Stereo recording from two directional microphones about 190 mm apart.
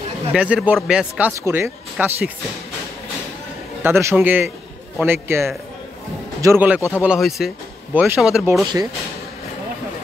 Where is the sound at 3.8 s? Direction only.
10° right (ahead or behind).